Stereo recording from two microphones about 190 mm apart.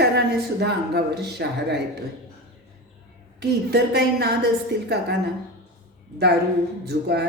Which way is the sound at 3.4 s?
60° right (ahead or behind).